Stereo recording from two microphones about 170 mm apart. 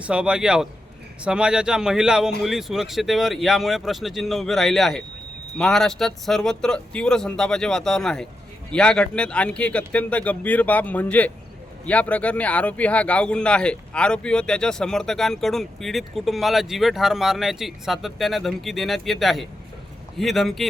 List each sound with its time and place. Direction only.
0.0 s speech: 5° right (ahead or behind)